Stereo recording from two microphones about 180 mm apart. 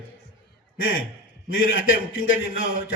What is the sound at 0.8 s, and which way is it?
A man's voice, 90° left.